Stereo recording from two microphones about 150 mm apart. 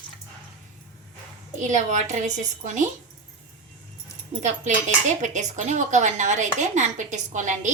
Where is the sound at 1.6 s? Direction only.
55° right (ahead or behind).